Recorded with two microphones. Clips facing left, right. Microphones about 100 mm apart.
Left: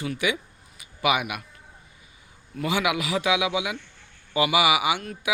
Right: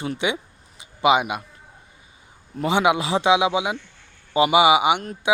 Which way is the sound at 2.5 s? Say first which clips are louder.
Right 6 dB; 30° right (ahead or behind).